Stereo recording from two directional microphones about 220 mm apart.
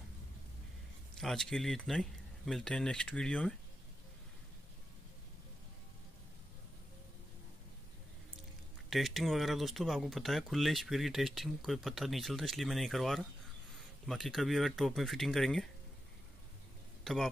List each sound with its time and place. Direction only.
1.1 s speech: centre (ahead or behind)
8.9 s speech: centre (ahead or behind)
17.0 s speech: centre (ahead or behind)